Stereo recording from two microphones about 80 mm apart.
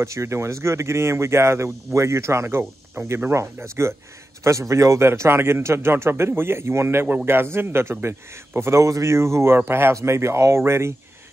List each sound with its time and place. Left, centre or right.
0.0 s a man's voice: right